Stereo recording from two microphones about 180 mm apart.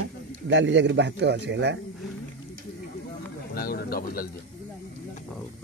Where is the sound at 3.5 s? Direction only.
55° left (ahead or behind).